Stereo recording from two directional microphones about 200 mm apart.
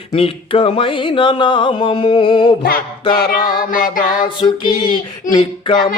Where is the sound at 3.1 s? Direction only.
45° left (ahead or behind).